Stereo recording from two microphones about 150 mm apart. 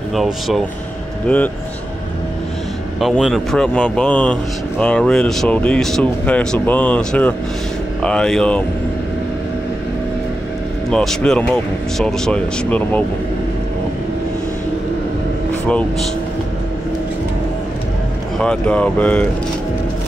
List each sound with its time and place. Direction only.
0.1 s speech: centre (ahead or behind)
1.2 s speech: 10° left (ahead or behind)
3.0 s speech: centre (ahead or behind)
10.9 s speech: 5° left (ahead or behind)
18.4 s speech: 5° left (ahead or behind)